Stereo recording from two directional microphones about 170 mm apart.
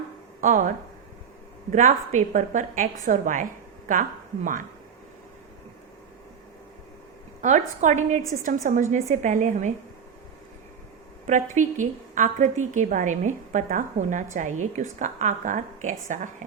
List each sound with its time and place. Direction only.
0.4 s a woman's voice: 45° right (ahead or behind)
1.7 s a woman's voice: 45° right (ahead or behind)
7.4 s a woman's voice: 45° right (ahead or behind)
11.3 s a woman's voice: 45° right (ahead or behind)